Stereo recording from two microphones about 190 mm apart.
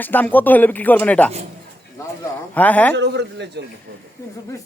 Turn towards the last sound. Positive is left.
turn(degrees=-65)  # may be behind; listen again after turning